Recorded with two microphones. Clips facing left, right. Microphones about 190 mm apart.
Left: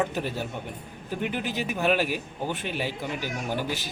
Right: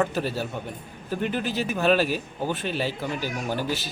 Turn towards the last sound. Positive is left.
turn(degrees=15)  # may be behind; listen again after turning